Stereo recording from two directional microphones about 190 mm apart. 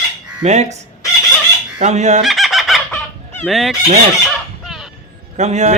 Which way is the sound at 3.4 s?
Centre (ahead or behind).